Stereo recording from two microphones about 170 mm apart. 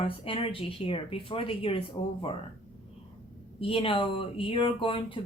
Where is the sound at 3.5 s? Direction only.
35° left (ahead or behind).